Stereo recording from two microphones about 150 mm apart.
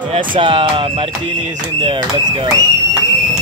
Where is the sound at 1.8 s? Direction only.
35° right (ahead or behind).